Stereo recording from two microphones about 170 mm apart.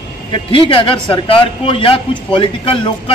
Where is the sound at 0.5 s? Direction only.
30° left (ahead or behind).